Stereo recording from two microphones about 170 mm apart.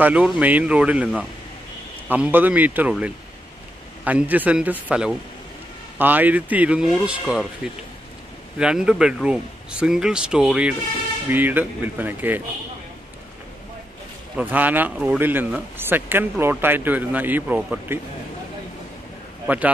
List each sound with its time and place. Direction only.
0.0 s speech: 10° right (ahead or behind)
14.3 s speech: 10° right (ahead or behind)
19.4 s a man's voice: 10° right (ahead or behind)